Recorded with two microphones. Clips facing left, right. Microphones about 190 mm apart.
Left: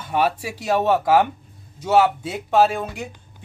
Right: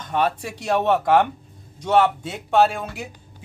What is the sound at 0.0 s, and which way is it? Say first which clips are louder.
Speech: left 1 dB; 10° left (ahead or behind).